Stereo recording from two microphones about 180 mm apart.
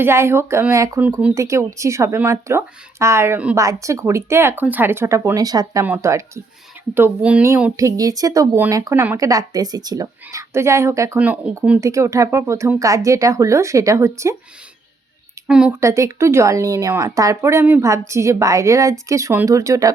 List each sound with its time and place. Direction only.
0.0 s a woman's voice: 15° right (ahead or behind)
15.4 s a woman's voice: 5° right (ahead or behind)
15.8 s a woman's voice: 15° right (ahead or behind)